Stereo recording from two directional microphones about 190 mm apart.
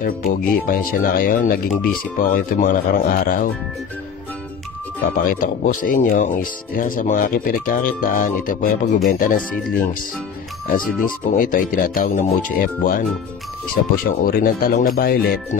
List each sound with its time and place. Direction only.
0.0 s speech: 50° left (ahead or behind)
1.7 s speech: centre (ahead or behind)
2.1 s speech: 45° left (ahead or behind)
5.1 s speech: 50° left (ahead or behind)
11.1 s speech: 45° left (ahead or behind)